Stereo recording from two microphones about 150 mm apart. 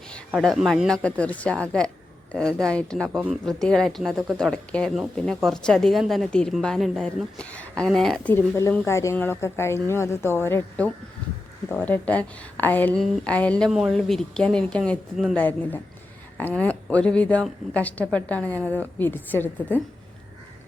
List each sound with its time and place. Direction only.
0.4 s a woman's voice: centre (ahead or behind)
3.1 s speech: 10° right (ahead or behind)
3.4 s a woman's voice: 5° left (ahead or behind)
13.7 s a woman's voice: 5° right (ahead or behind); by 19.8 s 15° left (ahead or behind)